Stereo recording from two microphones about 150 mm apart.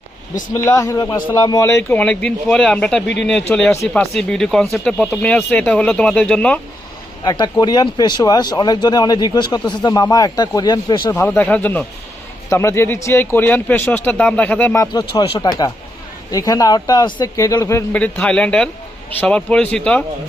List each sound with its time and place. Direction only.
0.5 s speech: 20° left (ahead or behind)
7.3 s speech: 25° left (ahead or behind)
11.2 s speech: 10° left (ahead or behind)
15.1 s speech: 30° left (ahead or behind); by 20.1 s 5° left (ahead or behind)